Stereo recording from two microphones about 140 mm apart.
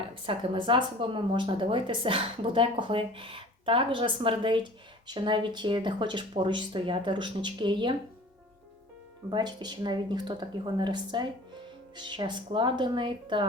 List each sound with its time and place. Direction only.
0.0 s a woman's voice: 40° right (ahead or behind)
9.3 s a woman's voice: 30° right (ahead or behind)